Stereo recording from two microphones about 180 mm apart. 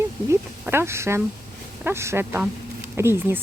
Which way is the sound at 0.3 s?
15° right (ahead or behind).